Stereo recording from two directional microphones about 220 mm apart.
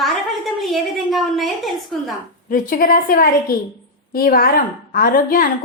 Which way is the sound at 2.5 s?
40° left (ahead or behind).